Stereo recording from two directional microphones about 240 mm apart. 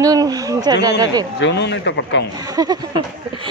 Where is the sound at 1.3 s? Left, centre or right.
Left.